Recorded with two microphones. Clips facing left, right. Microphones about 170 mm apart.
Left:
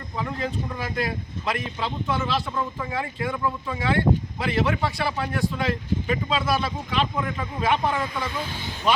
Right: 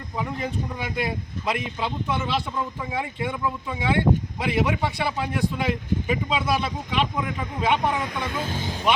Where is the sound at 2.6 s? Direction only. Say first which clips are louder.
Even; 10° right (ahead or behind).